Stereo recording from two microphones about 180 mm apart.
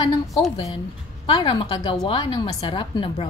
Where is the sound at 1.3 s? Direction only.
25° left (ahead or behind).